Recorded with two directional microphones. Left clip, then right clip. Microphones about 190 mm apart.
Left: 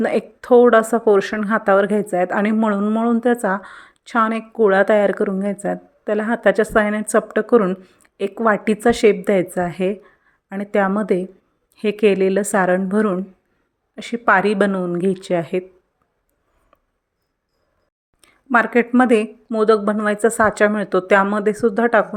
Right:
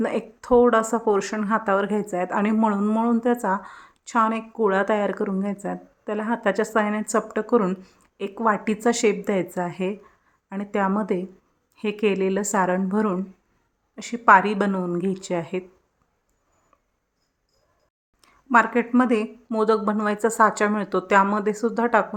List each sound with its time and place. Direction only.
0.0 s a woman's voice: 20° left (ahead or behind)
8.1 s a woman's voice: 20° left (ahead or behind)
18.2 s a woman's voice: 20° left (ahead or behind)